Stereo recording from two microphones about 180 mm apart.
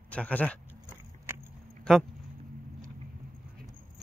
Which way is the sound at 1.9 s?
5° left (ahead or behind).